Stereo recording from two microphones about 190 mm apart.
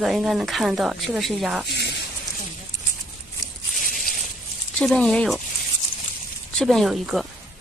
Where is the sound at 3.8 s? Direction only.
45° left (ahead or behind).